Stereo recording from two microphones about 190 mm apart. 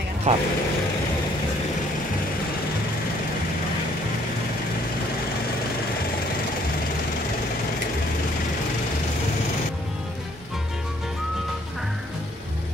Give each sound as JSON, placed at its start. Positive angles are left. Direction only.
{"t": 0.3, "sound": "speech", "side_deg": -35}